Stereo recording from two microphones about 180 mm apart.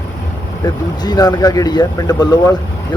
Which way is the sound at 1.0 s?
20° left (ahead or behind).